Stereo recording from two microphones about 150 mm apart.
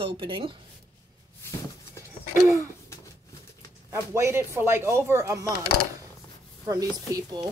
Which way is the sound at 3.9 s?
15° right (ahead or behind).